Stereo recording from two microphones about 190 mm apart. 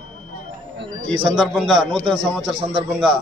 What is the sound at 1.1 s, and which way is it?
Speech, 25° right (ahead or behind).